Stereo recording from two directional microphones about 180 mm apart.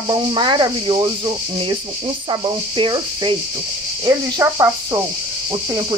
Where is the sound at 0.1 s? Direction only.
25° right (ahead or behind).